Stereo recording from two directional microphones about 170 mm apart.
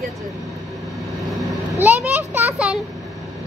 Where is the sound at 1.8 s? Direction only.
10° right (ahead or behind).